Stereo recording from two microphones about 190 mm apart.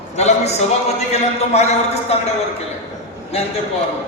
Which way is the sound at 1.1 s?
35° left (ahead or behind).